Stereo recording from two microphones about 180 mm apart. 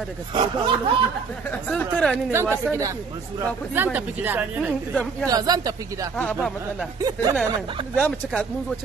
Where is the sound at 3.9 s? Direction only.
10° right (ahead or behind).